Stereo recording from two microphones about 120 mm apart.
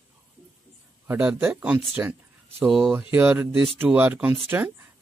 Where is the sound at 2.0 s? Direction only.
15° right (ahead or behind).